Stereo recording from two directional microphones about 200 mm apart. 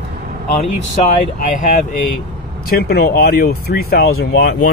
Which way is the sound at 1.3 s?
40° left (ahead or behind).